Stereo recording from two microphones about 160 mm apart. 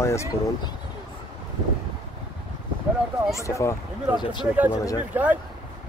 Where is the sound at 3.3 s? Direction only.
20° left (ahead or behind).